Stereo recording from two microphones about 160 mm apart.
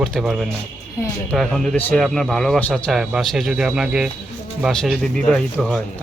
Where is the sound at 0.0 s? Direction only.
Centre (ahead or behind).